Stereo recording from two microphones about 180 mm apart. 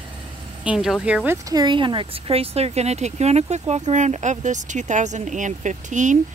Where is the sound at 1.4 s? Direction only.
20° right (ahead or behind).